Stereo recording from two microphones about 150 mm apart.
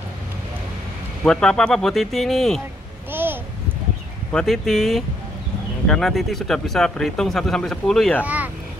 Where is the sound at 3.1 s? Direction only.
15° right (ahead or behind).